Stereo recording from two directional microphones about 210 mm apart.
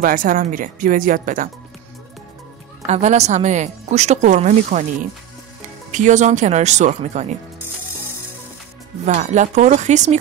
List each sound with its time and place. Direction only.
0.0 s a woman's voice: 40° right (ahead or behind)
2.9 s a woman's voice: 35° right (ahead or behind)
9.0 s a woman's voice: 35° right (ahead or behind)